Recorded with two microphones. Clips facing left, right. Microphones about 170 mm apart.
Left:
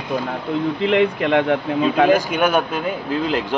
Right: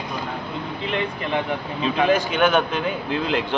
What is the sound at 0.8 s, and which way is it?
Speech, 75° left (ahead or behind).